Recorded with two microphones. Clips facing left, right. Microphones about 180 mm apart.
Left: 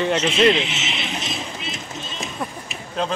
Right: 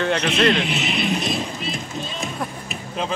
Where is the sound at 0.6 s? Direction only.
55° right (ahead or behind).